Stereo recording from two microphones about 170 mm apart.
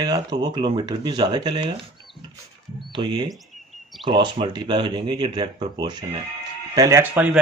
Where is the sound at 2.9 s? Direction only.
25° right (ahead or behind).